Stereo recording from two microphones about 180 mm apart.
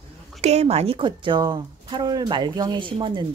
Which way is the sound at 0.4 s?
35° right (ahead or behind).